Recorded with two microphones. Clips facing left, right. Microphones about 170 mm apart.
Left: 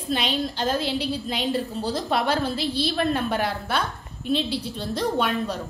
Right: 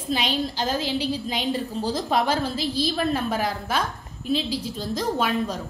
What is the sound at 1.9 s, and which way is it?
Speech, 60° left (ahead or behind).